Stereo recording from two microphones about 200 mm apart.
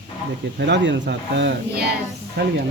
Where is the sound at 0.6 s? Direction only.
60° right (ahead or behind).